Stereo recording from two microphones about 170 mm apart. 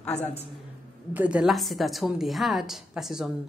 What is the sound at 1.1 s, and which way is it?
A woman's voice, 5° right (ahead or behind).